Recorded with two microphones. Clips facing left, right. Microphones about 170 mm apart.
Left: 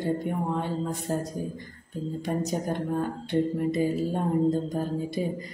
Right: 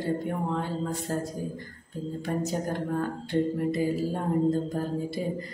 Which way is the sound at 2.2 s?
15° left (ahead or behind).